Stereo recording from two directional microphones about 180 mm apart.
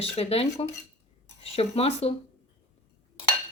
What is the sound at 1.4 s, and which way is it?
Speech, 35° left (ahead or behind).